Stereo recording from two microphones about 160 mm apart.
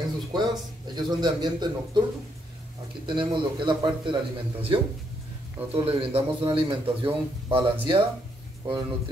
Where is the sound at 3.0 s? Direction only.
30° right (ahead or behind).